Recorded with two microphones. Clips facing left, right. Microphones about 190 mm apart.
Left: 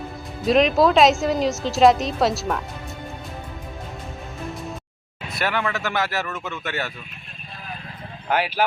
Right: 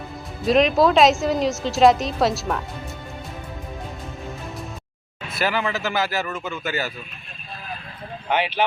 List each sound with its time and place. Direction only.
0.4 s a woman's voice: centre (ahead or behind)
5.3 s a woman's voice: centre (ahead or behind)
8.3 s speech: 5° left (ahead or behind)